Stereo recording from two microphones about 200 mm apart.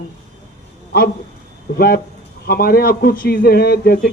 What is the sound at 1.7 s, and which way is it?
Speech, 50° left (ahead or behind).